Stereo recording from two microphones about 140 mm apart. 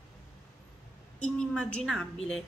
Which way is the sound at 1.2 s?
10° left (ahead or behind).